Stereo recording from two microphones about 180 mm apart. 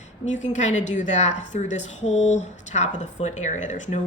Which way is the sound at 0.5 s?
40° left (ahead or behind).